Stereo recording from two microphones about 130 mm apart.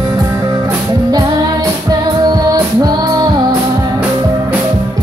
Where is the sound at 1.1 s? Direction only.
30° right (ahead or behind).